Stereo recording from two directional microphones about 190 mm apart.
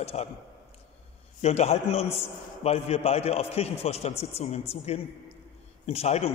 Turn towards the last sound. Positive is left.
turn(degrees=35)  # may be behind; listen again after turning